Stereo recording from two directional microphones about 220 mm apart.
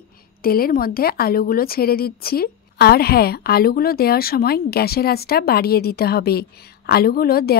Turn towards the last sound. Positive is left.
turn(degrees=45)  # may be behind; listen again after turning